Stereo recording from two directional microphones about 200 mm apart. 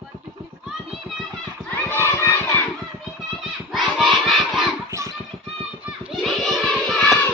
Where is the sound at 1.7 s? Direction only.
10° left (ahead or behind).